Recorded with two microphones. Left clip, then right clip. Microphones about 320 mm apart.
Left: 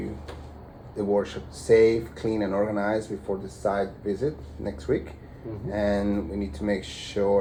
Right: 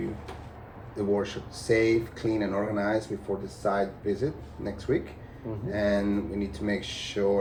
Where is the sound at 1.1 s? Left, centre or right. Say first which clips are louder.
Left 4 dB; centre.